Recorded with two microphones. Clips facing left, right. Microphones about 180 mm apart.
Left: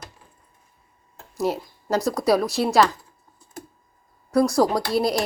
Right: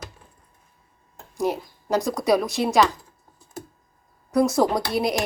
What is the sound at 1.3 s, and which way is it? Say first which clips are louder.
Speech: even; 15° right (ahead or behind).